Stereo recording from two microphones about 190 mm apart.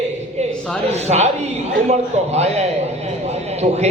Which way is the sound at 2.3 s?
35° right (ahead or behind).